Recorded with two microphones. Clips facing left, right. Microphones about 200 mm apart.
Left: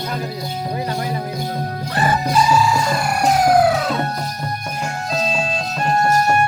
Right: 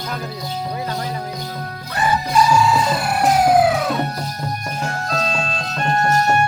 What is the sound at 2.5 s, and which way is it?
Music, centre (ahead or behind).